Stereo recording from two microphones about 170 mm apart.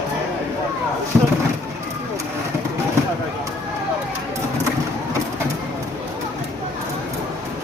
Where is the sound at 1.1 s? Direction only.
5° right (ahead or behind).